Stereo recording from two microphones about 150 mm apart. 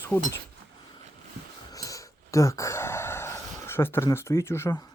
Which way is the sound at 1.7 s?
20° left (ahead or behind).